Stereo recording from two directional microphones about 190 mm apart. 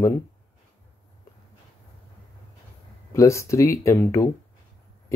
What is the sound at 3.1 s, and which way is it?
Speech, 15° left (ahead or behind).